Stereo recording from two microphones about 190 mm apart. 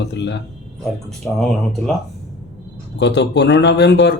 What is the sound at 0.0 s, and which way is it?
Speech, 65° left (ahead or behind).